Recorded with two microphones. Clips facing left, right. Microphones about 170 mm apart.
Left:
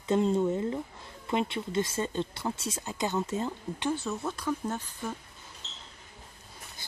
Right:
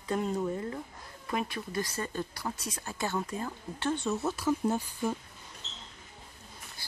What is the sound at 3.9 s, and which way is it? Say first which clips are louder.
Speech: right 2 dB; centre (ahead or behind).